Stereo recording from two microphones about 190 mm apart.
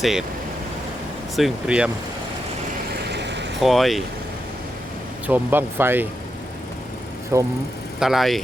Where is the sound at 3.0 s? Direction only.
65° right (ahead or behind).